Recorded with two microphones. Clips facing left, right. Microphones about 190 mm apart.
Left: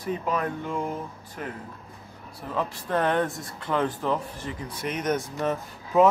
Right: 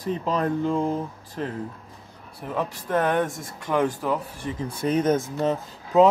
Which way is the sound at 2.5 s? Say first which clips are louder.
Right 2 dB; 10° right (ahead or behind).